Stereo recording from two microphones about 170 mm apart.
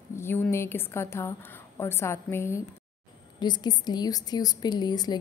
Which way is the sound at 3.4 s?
25° left (ahead or behind).